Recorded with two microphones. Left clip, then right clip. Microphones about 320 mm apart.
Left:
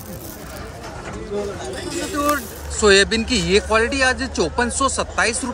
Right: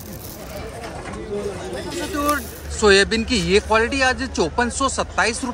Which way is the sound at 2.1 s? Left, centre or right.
Centre.